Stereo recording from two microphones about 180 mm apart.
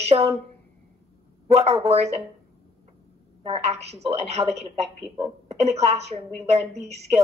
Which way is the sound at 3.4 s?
35° right (ahead or behind).